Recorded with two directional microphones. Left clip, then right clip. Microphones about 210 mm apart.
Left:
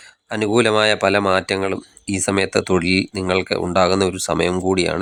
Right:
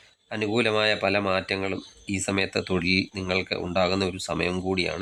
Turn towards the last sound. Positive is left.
turn(degrees=30)  # may be behind; listen again after turning